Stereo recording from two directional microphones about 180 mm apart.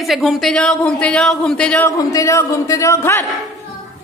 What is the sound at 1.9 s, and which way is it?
A man's voice, 20° left (ahead or behind).